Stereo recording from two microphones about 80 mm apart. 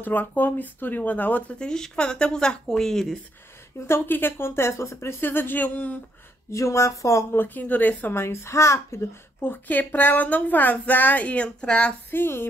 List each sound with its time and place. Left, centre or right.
0.0 s speech: left; by 3.2 s centre
3.8 s speech: left
6.5 s speech: left
7.3 s speech: left